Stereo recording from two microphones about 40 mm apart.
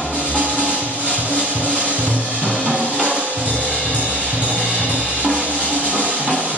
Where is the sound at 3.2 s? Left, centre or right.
Right.